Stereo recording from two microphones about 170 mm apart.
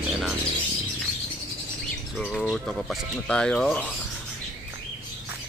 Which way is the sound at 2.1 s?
5° left (ahead or behind).